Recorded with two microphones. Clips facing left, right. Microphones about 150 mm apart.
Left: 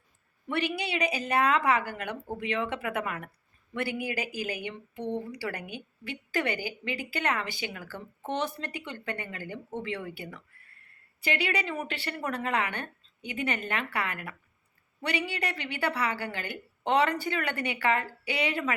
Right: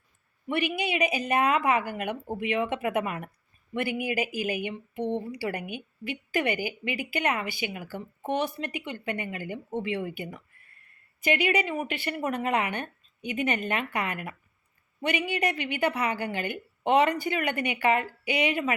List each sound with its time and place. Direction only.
0.4 s a woman's voice: 15° right (ahead or behind)